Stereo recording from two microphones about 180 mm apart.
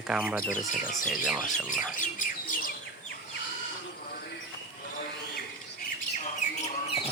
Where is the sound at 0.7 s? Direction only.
45° left (ahead or behind).